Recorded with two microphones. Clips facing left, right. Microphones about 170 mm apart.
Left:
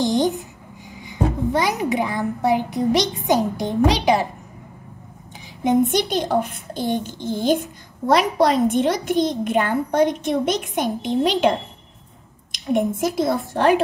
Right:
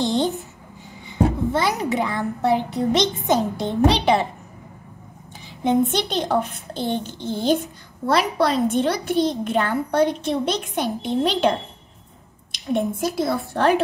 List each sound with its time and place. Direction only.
0.0 s a sound: 15° left (ahead or behind)
1.0 s music: 15° left (ahead or behind)
1.8 s a child's voice: 15° left (ahead or behind)
5.6 s a child's voice: 15° left (ahead or behind)
12.5 s a child's voice: 20° left (ahead or behind)